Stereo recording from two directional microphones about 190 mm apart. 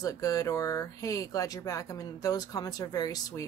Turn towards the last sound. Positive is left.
turn(degrees=20)  # may be behind; listen again after turning